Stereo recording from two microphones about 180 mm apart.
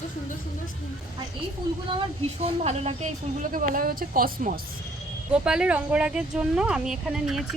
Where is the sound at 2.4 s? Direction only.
35° right (ahead or behind).